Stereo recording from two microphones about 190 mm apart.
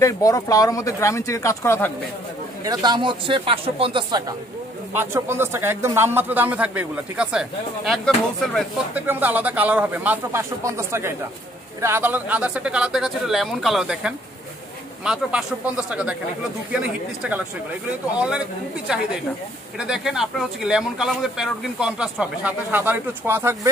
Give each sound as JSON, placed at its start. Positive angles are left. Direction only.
{"t": 0.0, "sound": "speech", "side_deg": 20}
{"t": 2.6, "sound": "speech", "side_deg": -20}
{"t": 4.9, "sound": "speech", "side_deg": -10}
{"t": 8.9, "sound": "speech", "side_deg": -10}
{"t": 18.9, "sound": "speech", "side_deg": -5}